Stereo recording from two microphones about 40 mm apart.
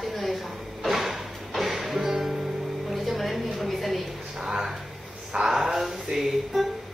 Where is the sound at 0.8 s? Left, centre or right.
Centre.